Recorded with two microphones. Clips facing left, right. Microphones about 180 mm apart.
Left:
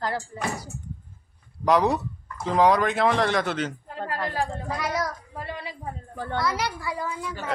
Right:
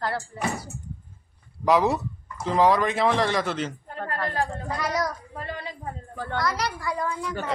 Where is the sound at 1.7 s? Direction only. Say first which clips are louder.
Even; centre (ahead or behind).